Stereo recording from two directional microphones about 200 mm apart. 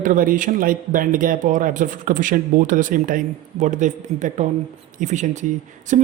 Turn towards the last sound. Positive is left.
turn(degrees=-40)  # may be behind; listen again after turning